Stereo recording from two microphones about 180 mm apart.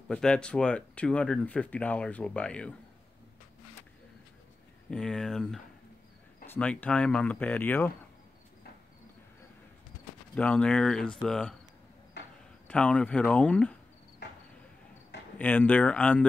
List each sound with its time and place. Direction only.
0.1 s speech: 5° left (ahead or behind)
4.9 s speech: 5° left (ahead or behind)
10.3 s speech: 5° left (ahead or behind)
12.6 s speech: 5° left (ahead or behind)
14.2 s a sound: 70° left (ahead or behind)
15.3 s speech: 10° left (ahead or behind)